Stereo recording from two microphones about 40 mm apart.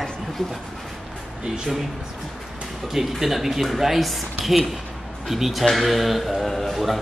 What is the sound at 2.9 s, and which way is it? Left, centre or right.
A man's voice, centre.